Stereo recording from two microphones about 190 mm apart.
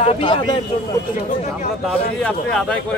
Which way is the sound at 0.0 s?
30° left (ahead or behind).